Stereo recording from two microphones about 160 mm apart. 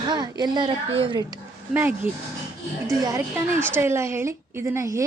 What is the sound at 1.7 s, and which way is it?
A woman's voice, 10° right (ahead or behind).